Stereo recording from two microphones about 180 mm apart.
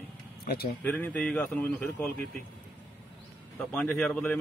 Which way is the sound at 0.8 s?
10° left (ahead or behind).